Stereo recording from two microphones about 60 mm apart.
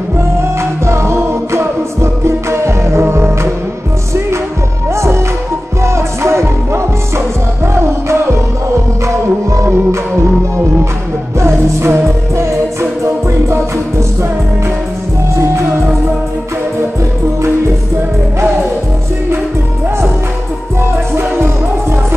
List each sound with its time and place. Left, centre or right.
0.4 s music: right
4.8 s music: right
11.3 s music: right
13.0 s music: right
21.1 s music: right